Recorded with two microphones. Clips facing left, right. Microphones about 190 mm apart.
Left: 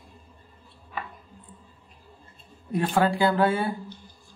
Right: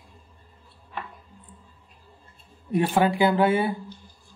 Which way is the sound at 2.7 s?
15° right (ahead or behind).